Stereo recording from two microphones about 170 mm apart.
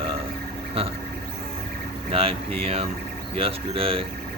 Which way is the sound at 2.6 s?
35° right (ahead or behind).